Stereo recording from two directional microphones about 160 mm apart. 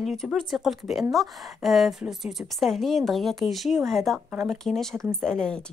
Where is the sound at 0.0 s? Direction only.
Centre (ahead or behind).